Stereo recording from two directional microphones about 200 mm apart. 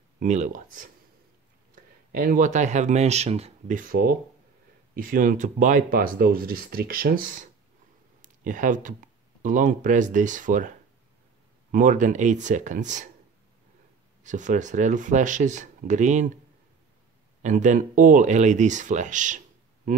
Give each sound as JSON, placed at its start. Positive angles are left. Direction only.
{"t": 0.2, "sound": "speech", "side_deg": -35}
{"t": 2.1, "sound": "speech", "side_deg": -45}
{"t": 11.7, "sound": "speech", "side_deg": -40}
{"t": 14.2, "sound": "speech", "side_deg": -40}
{"t": 17.4, "sound": "speech", "side_deg": -35}